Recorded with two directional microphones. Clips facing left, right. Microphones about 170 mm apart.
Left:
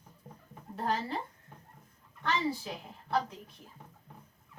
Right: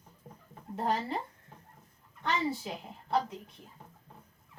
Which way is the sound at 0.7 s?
20° right (ahead or behind).